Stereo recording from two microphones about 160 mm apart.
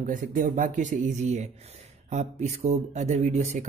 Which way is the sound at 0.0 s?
55° right (ahead or behind).